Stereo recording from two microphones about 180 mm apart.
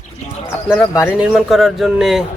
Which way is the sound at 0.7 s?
15° left (ahead or behind).